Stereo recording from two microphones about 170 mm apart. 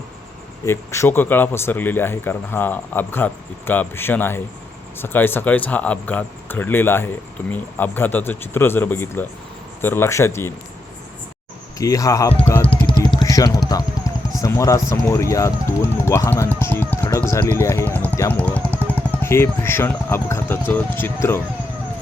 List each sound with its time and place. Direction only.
0.6 s speech: 15° left (ahead or behind)
11.8 s speech: 20° left (ahead or behind)
12.4 s music: 15° left (ahead or behind)
12.6 s vehicle: 30° left (ahead or behind)
13.7 s speech: 20° left (ahead or behind)